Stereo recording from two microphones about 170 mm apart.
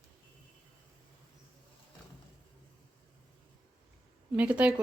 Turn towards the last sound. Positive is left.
turn(degrees=-5)  # may be behind; listen again after turning